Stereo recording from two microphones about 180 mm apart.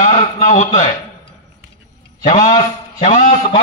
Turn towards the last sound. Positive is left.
turn(degrees=40)  # may be behind; listen again after turning